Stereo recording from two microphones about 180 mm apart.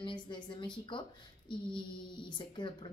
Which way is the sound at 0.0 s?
25° left (ahead or behind).